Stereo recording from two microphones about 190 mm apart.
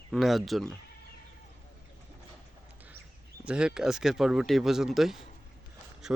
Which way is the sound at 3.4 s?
5° right (ahead or behind).